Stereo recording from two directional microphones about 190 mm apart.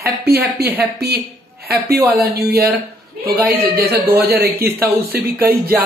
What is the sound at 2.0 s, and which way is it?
Speech, 10° right (ahead or behind).